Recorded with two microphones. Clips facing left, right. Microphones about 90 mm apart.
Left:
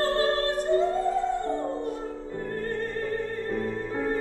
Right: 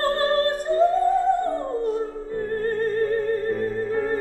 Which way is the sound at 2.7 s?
45° right (ahead or behind).